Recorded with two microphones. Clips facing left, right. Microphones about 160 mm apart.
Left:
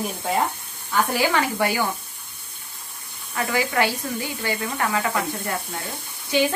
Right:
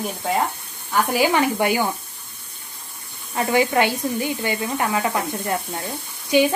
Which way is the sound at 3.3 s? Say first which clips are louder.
Right 5 dB; 25° right (ahead or behind).